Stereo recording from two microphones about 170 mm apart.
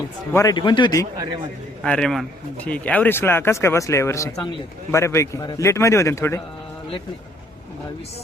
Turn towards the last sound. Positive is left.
turn(degrees=15)  # may be behind; listen again after turning